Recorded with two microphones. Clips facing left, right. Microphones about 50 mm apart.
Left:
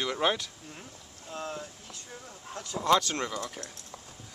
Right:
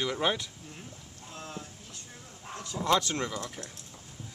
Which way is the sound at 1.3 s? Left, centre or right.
Left.